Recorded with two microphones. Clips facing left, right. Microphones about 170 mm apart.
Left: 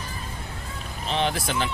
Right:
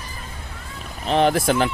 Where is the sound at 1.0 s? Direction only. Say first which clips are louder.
Right 8 dB; 50° right (ahead or behind).